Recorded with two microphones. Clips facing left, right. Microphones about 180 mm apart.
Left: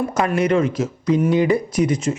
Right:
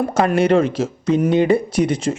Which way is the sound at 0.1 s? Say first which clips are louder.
Right 5 dB; 30° right (ahead or behind).